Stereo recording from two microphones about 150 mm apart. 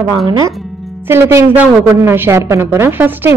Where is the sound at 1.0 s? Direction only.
15° right (ahead or behind).